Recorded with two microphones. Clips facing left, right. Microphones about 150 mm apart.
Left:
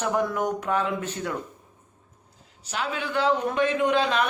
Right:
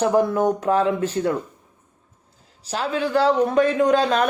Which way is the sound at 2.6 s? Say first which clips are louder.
Right 6 dB; 35° right (ahead or behind).